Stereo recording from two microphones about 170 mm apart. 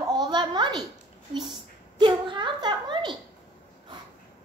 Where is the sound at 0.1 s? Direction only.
25° right (ahead or behind).